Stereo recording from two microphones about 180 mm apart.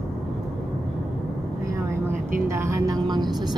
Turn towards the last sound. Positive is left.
turn(degrees=-25)  # may be behind; listen again after turning